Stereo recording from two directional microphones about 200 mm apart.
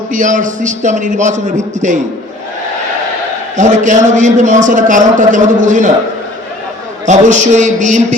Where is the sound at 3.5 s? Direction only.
40° right (ahead or behind).